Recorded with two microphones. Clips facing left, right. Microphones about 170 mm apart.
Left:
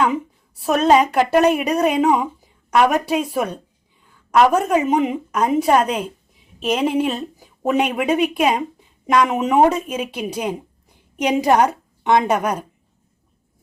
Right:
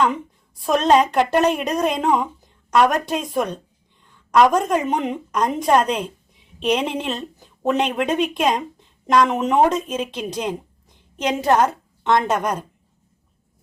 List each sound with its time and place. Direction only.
0.6 s a woman's voice: 5° left (ahead or behind)